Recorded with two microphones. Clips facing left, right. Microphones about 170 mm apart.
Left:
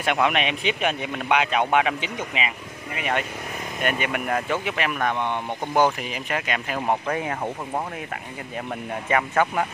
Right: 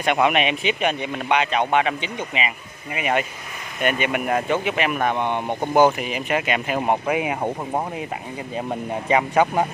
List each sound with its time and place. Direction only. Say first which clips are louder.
0.0 s speech: right 3 dB; centre (ahead or behind); by 9.7 s 20° right (ahead or behind)